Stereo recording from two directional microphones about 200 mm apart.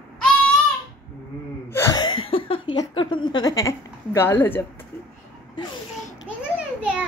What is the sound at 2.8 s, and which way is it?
A woman's voice, 25° left (ahead or behind).